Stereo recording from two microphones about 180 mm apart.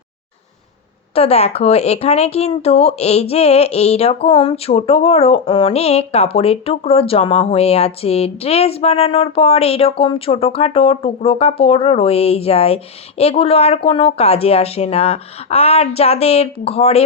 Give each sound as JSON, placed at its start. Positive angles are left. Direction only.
{"t": 1.1, "sound": "speech", "side_deg": 35}